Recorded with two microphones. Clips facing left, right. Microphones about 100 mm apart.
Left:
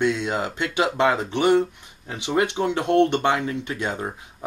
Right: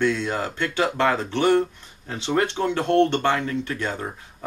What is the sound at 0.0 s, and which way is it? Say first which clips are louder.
Speech: even; 15° left (ahead or behind).